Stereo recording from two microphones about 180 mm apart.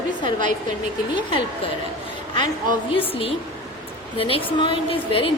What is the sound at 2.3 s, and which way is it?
A woman's voice, 25° left (ahead or behind).